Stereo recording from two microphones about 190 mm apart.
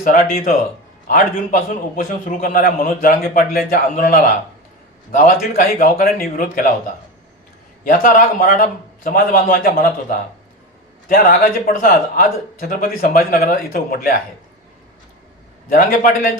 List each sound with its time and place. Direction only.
0.0 s a man's voice: 45° left (ahead or behind)
7.9 s a man's voice: 45° left (ahead or behind)
15.7 s a man's voice: 50° left (ahead or behind)